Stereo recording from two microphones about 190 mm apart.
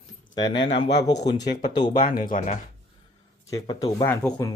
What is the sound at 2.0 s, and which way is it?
Speech, 45° left (ahead or behind).